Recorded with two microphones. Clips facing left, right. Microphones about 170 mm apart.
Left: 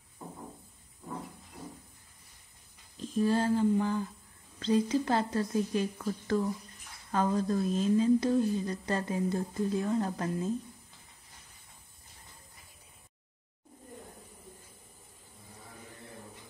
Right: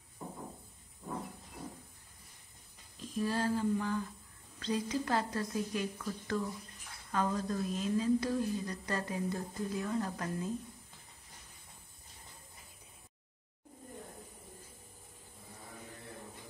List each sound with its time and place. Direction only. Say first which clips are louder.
3.3 s a woman's voice: left 5 dB; 25° left (ahead or behind)